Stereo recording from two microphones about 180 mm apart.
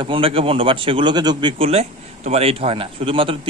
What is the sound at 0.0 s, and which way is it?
Speech, 30° right (ahead or behind).